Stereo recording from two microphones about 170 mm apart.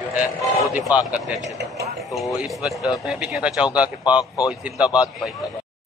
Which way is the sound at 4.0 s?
25° left (ahead or behind).